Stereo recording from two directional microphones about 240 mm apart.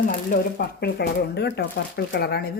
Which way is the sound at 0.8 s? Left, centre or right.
Left.